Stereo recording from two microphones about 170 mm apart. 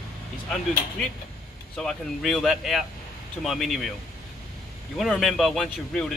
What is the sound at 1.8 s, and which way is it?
Speech, centre (ahead or behind).